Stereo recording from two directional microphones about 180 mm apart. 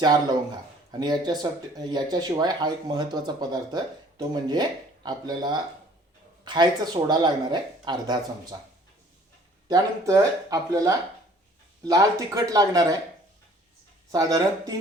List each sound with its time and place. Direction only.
0.0 s speech: 20° right (ahead or behind)
9.6 s speech: 20° right (ahead or behind)
14.1 s speech: 20° right (ahead or behind)